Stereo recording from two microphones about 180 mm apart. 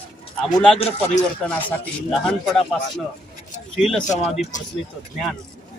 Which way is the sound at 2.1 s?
Centre (ahead or behind).